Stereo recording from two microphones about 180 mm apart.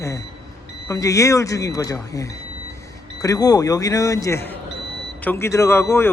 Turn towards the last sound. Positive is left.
turn(degrees=15)  # may be behind; listen again after turning